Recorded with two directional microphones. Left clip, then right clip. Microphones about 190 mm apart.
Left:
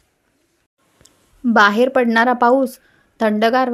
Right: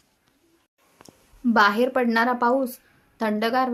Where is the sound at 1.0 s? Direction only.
30° left (ahead or behind).